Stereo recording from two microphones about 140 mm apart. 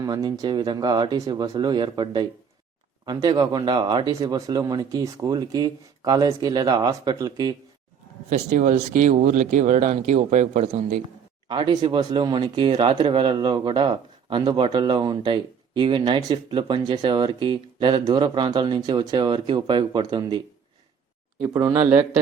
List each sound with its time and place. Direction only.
0.0 s speech: 25° right (ahead or behind)
8.3 s speech: 60° right (ahead or behind)
11.4 s speech: 35° right (ahead or behind)
21.4 s speech: 20° right (ahead or behind)